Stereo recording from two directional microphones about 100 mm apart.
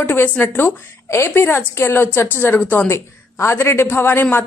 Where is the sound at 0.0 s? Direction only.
20° left (ahead or behind).